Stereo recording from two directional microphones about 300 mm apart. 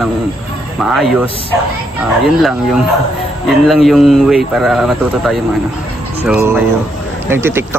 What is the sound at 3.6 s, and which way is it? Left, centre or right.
A man's voice, centre.